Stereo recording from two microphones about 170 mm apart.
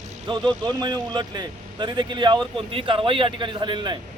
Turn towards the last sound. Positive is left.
turn(degrees=-25)  # may be behind; listen again after turning